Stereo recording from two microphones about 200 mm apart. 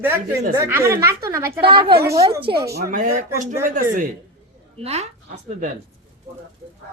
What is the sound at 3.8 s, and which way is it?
A woman's voice, 40° right (ahead or behind).